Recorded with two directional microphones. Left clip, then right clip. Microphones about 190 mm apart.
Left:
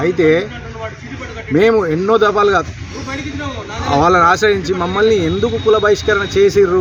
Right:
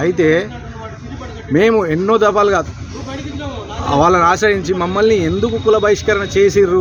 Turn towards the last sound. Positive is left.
turn(degrees=-15)  # may be behind; listen again after turning